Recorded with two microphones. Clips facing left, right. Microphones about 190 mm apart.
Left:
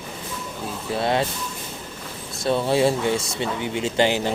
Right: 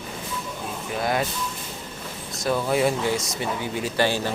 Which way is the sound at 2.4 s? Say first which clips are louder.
Left 2 dB; 25° left (ahead or behind).